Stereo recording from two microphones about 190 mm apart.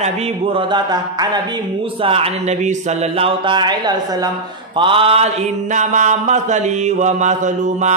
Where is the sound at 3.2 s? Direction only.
25° right (ahead or behind).